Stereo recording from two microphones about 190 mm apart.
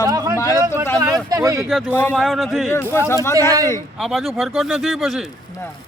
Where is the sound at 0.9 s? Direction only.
15° right (ahead or behind).